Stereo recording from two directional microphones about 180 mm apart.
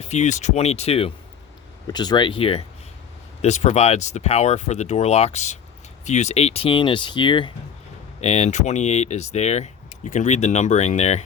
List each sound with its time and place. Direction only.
0.0 s speech: 40° left (ahead or behind)
8.2 s speech: 40° left (ahead or behind)